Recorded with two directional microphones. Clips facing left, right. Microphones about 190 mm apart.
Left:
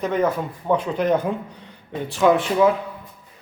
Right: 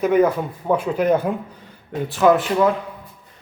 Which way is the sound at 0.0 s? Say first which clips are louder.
Right 5 dB; 10° right (ahead or behind).